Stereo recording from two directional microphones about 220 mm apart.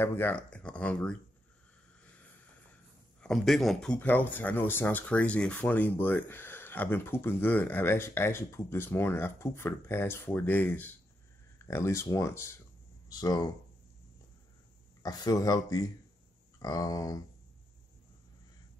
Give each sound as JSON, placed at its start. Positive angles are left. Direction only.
{"t": 0.0, "sound": "speech", "side_deg": 10}
{"t": 3.2, "sound": "speech", "side_deg": 0}
{"t": 15.0, "sound": "speech", "side_deg": 15}